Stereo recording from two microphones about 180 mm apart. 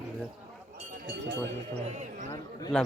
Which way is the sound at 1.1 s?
70° right (ahead or behind).